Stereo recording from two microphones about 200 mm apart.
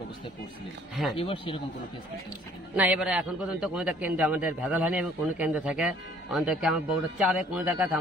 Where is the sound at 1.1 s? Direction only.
30° left (ahead or behind).